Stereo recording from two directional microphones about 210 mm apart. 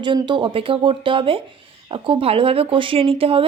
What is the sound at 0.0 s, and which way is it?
Speech, 20° right (ahead or behind).